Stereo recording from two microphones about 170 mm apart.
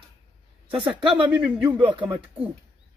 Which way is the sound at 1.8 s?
25° right (ahead or behind).